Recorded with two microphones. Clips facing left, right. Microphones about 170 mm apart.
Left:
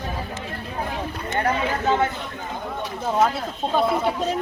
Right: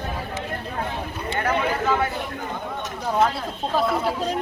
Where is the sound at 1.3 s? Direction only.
25° left (ahead or behind).